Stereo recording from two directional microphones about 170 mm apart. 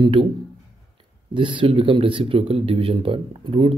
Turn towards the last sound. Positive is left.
turn(degrees=-35)  # may be behind; listen again after turning